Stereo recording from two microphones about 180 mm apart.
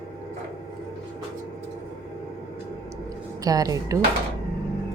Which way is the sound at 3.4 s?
20° right (ahead or behind).